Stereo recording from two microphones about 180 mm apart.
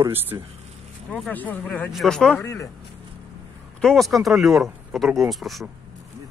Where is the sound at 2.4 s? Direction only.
15° left (ahead or behind).